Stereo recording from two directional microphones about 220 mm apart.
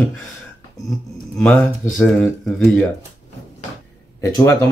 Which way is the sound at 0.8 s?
Centre (ahead or behind).